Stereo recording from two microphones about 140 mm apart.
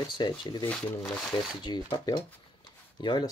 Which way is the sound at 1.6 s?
30° left (ahead or behind).